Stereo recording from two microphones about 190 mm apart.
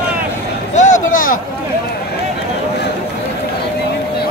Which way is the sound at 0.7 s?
40° left (ahead or behind).